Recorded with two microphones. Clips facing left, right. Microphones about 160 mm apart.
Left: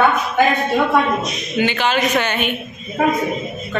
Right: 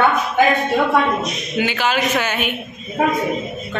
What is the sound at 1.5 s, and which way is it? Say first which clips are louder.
A man's voice: left 2 dB; 5° right (ahead or behind).